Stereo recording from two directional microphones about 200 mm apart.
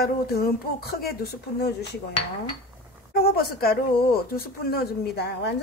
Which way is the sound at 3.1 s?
50° left (ahead or behind).